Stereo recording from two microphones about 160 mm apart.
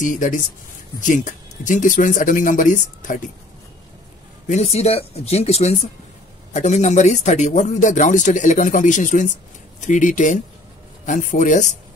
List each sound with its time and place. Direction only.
0.0 s speech: 55° left (ahead or behind)
4.5 s speech: 40° left (ahead or behind)